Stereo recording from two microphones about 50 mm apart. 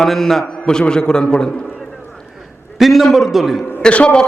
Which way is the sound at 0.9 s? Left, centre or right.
Centre.